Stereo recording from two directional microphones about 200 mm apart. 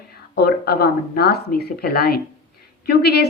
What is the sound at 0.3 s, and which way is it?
A woman's voice, 50° left (ahead or behind).